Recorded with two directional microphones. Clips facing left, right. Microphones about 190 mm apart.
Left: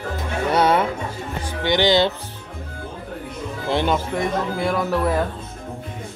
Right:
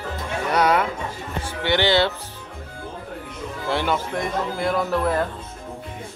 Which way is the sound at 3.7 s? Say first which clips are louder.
Left 3 dB; 20° left (ahead or behind).